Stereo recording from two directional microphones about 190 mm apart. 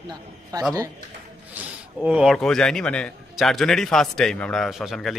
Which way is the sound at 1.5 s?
5° right (ahead or behind).